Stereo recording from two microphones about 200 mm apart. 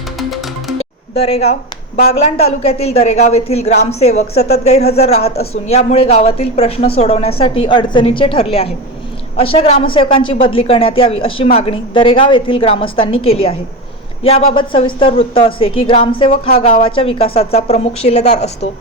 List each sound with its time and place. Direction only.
0.2 s music: centre (ahead or behind)
0.8 s a sound: 30° left (ahead or behind)
2.0 s a woman's voice: 30° left (ahead or behind)